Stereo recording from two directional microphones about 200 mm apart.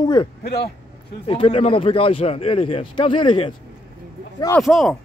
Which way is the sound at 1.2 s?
30° left (ahead or behind).